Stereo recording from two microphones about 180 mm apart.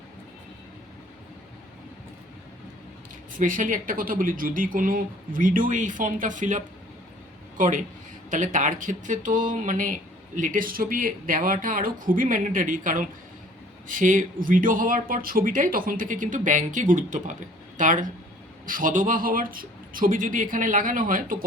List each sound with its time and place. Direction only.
3.3 s speech: 50° right (ahead or behind)
7.6 s speech: 50° right (ahead or behind)